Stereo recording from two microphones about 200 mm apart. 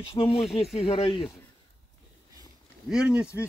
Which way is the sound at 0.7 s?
30° left (ahead or behind).